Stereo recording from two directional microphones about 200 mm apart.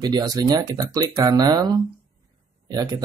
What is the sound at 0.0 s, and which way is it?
Speech, 20° right (ahead or behind).